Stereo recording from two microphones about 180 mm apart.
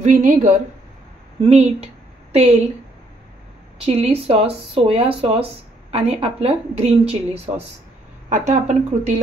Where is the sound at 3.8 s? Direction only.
35° right (ahead or behind).